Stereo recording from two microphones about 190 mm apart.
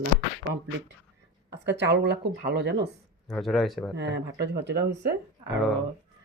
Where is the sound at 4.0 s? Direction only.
65° right (ahead or behind).